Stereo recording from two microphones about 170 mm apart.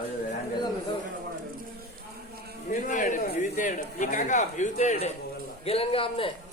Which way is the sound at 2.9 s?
50° left (ahead or behind).